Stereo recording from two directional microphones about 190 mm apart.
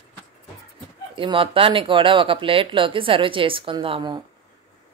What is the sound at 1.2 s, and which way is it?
Speech, 30° right (ahead or behind).